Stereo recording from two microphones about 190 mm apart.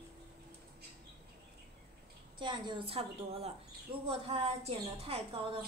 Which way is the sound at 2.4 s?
25° right (ahead or behind).